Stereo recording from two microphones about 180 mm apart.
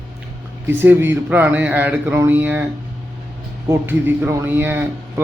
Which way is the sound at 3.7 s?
10° right (ahead or behind).